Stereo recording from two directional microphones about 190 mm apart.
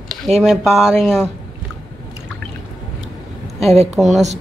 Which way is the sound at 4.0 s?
Centre (ahead or behind).